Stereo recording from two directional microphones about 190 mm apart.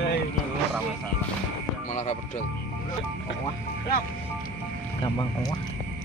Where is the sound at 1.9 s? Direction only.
35° left (ahead or behind).